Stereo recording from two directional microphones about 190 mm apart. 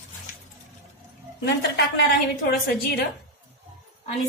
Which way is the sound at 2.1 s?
55° left (ahead or behind).